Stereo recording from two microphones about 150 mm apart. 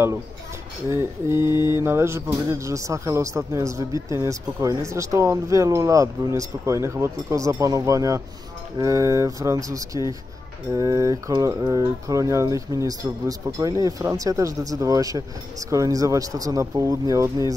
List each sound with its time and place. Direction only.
0.8 s speech: 20° right (ahead or behind)